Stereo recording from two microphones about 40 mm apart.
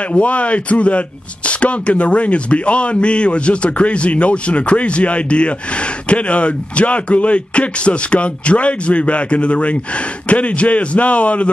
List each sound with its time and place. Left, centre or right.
0.1 s speech: left